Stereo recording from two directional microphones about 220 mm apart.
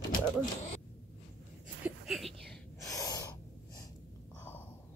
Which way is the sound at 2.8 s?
15° left (ahead or behind).